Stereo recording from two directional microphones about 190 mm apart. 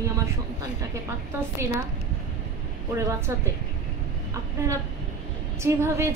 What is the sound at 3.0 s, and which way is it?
Speech, 15° right (ahead or behind).